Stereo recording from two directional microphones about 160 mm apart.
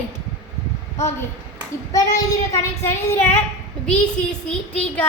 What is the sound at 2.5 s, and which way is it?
Speech, 15° left (ahead or behind).